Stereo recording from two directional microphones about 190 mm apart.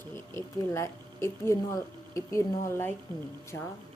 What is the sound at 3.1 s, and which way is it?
Speech, 20° right (ahead or behind).